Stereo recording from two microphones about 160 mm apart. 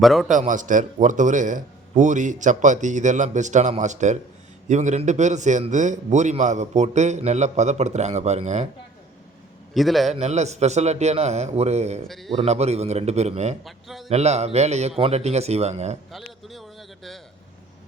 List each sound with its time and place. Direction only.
0.0 s a man's voice: centre (ahead or behind)
0.3 s a man's voice: 55° right (ahead or behind)
9.7 s a man's voice: centre (ahead or behind)
10.2 s a man's voice: 45° right (ahead or behind)
12.0 s a man's voice: centre (ahead or behind)
12.4 s a man's voice: 40° right (ahead or behind)
13.7 s a man's voice: centre (ahead or behind)
14.1 s a man's voice: 45° right (ahead or behind)
16.1 s a sound: centre (ahead or behind)